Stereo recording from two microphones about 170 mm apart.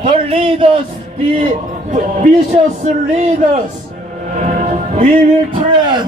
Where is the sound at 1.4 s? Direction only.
50° right (ahead or behind).